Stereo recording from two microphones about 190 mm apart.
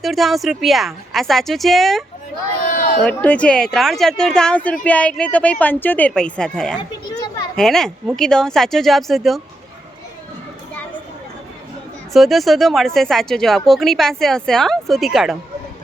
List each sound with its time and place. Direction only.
0.0 s speech: centre (ahead or behind)
2.6 s a sound: 45° left (ahead or behind)
3.0 s speech: 5° left (ahead or behind)
12.1 s speech: centre (ahead or behind)